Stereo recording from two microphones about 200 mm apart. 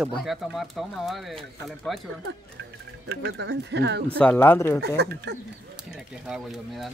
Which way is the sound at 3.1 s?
60° right (ahead or behind).